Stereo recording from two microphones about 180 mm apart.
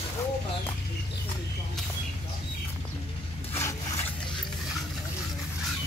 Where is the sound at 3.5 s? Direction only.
15° left (ahead or behind).